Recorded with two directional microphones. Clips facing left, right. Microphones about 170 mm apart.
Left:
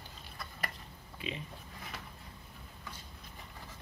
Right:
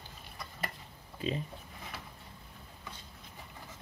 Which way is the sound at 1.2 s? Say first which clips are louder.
Right 7 dB; 40° right (ahead or behind).